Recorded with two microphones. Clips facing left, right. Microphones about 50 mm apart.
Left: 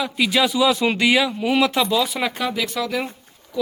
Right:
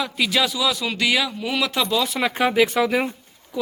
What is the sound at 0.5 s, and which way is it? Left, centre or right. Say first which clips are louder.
Speech: left 5 dB; left.